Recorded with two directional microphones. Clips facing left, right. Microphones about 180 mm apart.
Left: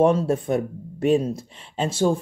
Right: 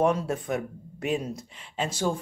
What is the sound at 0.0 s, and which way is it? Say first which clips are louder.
Speech: left 6 dB; 30° left (ahead or behind).